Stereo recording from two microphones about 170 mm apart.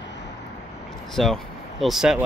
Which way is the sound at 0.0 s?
90° left.